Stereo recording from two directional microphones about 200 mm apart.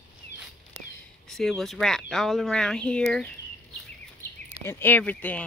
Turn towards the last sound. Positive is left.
turn(degrees=10)  # may be behind; listen again after turning